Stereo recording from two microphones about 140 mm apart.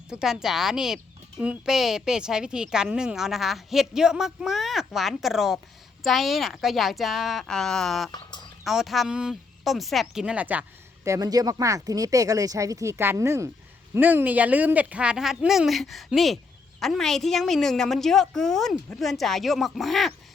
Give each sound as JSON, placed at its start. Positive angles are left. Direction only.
{"t": 0.1, "sound": "a woman's voice", "side_deg": -5}
{"t": 8.1, "sound": "a sound", "side_deg": 30}
{"t": 8.6, "sound": "speech", "side_deg": 0}
{"t": 11.1, "sound": "a woman's voice", "side_deg": -25}